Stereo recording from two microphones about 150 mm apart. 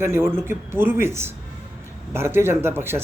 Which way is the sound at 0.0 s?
15° right (ahead or behind).